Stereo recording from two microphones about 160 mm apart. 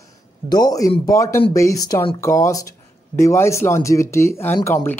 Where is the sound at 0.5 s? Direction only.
25° left (ahead or behind).